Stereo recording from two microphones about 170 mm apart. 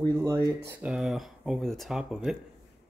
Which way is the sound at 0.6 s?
5° right (ahead or behind).